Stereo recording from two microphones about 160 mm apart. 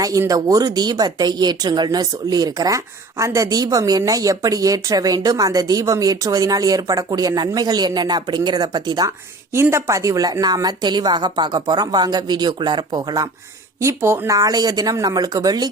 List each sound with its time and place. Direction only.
0.0 s speech: 20° right (ahead or behind)